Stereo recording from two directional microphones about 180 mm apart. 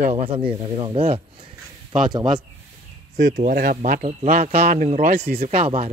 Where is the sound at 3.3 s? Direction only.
50° right (ahead or behind).